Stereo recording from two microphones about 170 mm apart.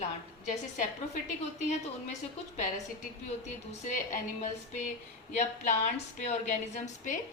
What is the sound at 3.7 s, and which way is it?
A woman's voice, 40° left (ahead or behind).